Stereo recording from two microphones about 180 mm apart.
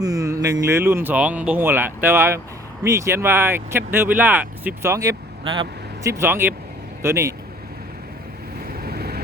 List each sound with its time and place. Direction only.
0.0 s speech: 20° right (ahead or behind)
8.8 s vehicle: 60° right (ahead or behind)